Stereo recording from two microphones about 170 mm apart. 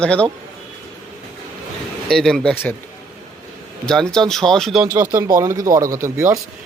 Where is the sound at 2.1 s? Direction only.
5° left (ahead or behind).